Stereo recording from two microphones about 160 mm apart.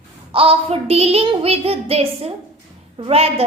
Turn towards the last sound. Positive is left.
turn(degrees=-40)  # may be behind; listen again after turning